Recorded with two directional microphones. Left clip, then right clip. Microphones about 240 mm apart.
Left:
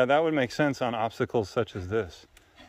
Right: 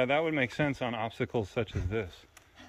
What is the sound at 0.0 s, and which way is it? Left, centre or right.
Speech, left.